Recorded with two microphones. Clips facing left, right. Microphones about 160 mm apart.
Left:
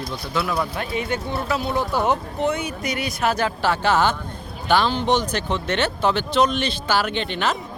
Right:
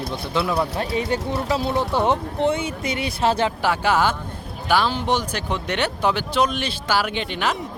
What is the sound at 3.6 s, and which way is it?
Speech, 10° right (ahead or behind).